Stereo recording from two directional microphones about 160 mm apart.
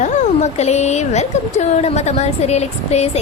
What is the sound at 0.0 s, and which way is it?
A woman's voice, 45° left (ahead or behind).